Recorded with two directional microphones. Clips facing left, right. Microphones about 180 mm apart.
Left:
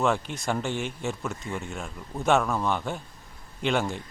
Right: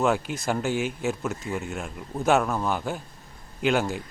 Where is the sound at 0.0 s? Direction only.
5° right (ahead or behind).